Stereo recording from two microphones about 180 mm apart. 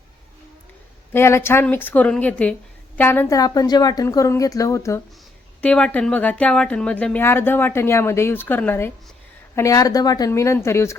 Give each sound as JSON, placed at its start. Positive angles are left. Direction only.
{"t": 1.1, "sound": "a woman's voice", "side_deg": 15}